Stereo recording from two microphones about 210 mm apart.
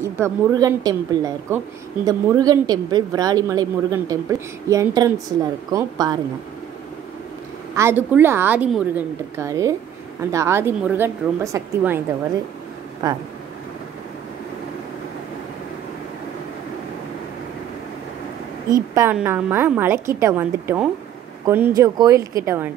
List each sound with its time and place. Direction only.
0.0 s a woman's voice: 15° right (ahead or behind)
7.7 s a woman's voice: 10° right (ahead or behind)
13.0 s speech: 20° right (ahead or behind)
18.9 s a woman's voice: 10° right (ahead or behind)